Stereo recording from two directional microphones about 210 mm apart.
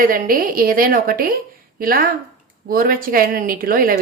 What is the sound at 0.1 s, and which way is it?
A woman's voice, 40° right (ahead or behind).